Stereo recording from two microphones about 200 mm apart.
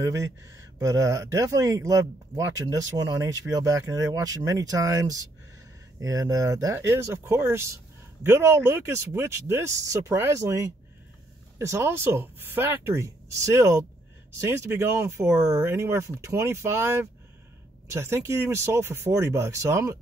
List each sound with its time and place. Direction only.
0.0 s speech: 15° right (ahead or behind)